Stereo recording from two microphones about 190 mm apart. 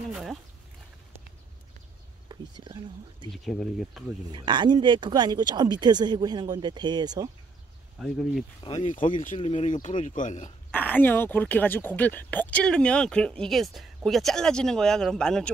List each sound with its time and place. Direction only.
0.1 s a sound: centre (ahead or behind)
2.2 s speech: 20° right (ahead or behind)
3.3 s speech: centre (ahead or behind)
4.3 s speech: 25° right (ahead or behind)
8.0 s speech: centre (ahead or behind)
8.6 s speech: 40° left (ahead or behind)
9.4 s speech: 30° left (ahead or behind)
10.7 s speech: 10° left (ahead or behind)